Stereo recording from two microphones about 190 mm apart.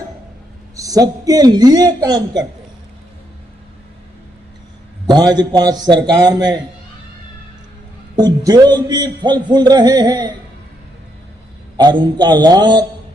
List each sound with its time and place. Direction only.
0.8 s a man's voice: 20° right (ahead or behind)
5.0 s a man's voice: 20° right (ahead or behind)
8.1 s a man's voice: 20° right (ahead or behind)
11.8 s a man's voice: 20° right (ahead or behind)